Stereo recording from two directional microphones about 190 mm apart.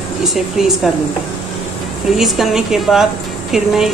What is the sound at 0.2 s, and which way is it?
Speech, centre (ahead or behind).